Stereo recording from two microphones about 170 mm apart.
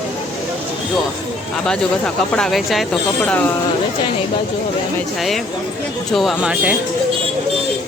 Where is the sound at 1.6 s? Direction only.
5° left (ahead or behind).